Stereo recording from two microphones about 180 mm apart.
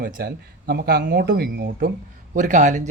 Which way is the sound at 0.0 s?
55° right (ahead or behind).